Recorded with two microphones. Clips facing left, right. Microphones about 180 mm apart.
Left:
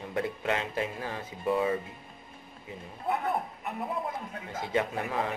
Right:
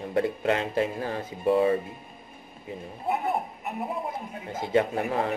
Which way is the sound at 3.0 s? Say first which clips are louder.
Right 2 dB; 20° right (ahead or behind).